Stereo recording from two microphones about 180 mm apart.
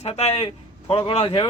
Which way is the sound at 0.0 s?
35° left (ahead or behind).